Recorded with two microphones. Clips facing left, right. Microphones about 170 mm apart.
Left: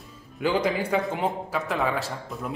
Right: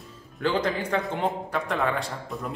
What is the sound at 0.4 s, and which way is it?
A man's voice, 10° left (ahead or behind).